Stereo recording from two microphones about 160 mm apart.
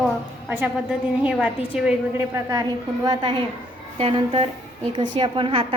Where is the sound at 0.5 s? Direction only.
10° right (ahead or behind).